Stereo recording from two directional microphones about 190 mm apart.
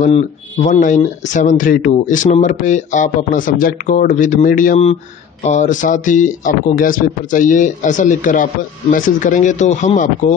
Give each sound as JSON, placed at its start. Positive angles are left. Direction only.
{"t": 0.7, "sound": "speech", "side_deg": 40}